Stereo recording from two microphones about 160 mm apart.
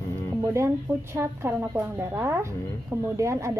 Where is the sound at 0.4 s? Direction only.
15° right (ahead or behind).